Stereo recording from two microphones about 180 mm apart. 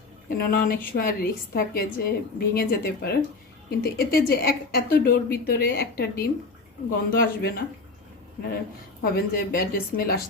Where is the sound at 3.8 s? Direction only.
60° left (ahead or behind).